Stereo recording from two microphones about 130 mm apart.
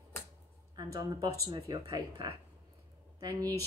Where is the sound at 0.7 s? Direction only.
35° right (ahead or behind).